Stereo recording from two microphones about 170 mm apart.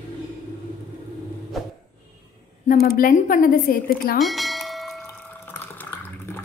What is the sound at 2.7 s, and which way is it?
A woman's voice, 55° left (ahead or behind).